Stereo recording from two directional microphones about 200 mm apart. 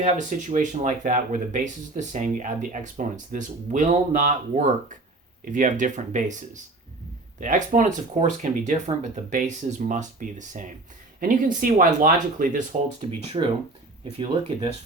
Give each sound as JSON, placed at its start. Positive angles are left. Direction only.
{"t": 0.0, "sound": "speech", "side_deg": -40}
{"t": 13.4, "sound": "speech", "side_deg": -30}